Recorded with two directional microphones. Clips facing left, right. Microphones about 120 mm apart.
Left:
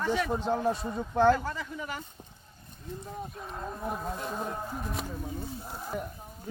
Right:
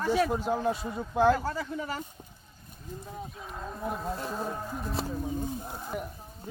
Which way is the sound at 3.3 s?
Centre (ahead or behind).